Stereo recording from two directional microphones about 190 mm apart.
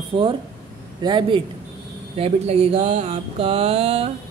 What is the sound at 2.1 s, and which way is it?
Mantra, 30° right (ahead or behind).